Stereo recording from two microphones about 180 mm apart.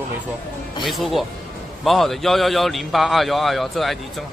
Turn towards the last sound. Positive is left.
turn(degrees=0)  # may be behind; listen again after turning